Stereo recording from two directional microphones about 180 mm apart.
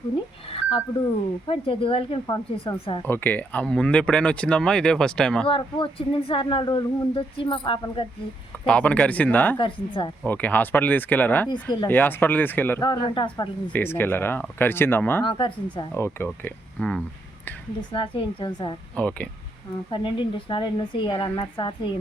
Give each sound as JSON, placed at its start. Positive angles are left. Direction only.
{"t": 0.5, "sound": "speech", "side_deg": 30}
{"t": 3.0, "sound": "speech", "side_deg": 10}
{"t": 5.5, "sound": "speech", "side_deg": 30}
{"t": 8.6, "sound": "speech", "side_deg": 5}
{"t": 9.6, "sound": "speech", "side_deg": 30}
{"t": 10.2, "sound": "speech", "side_deg": 10}
{"t": 13.1, "sound": "speech", "side_deg": 25}
{"t": 13.7, "sound": "speech", "side_deg": 10}
{"t": 15.2, "sound": "speech", "side_deg": 25}
{"t": 15.9, "sound": "speech", "side_deg": 15}
{"t": 17.9, "sound": "speech", "side_deg": 30}
{"t": 18.9, "sound": "speech", "side_deg": 5}
{"t": 19.9, "sound": "speech", "side_deg": 30}